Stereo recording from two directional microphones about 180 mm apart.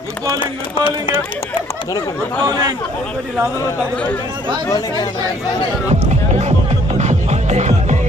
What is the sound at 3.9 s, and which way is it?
Speech, 5° left (ahead or behind).